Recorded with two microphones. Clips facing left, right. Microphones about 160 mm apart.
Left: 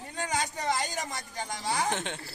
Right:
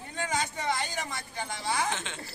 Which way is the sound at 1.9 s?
55° left (ahead or behind).